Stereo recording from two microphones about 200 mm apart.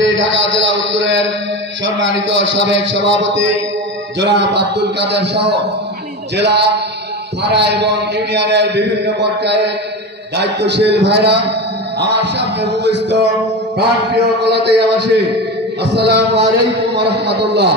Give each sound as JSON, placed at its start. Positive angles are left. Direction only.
{"t": 0.0, "sound": "a sound", "side_deg": -65}
{"t": 1.9, "sound": "a man's voice", "side_deg": -65}
{"t": 14.4, "sound": "a man's voice", "side_deg": -55}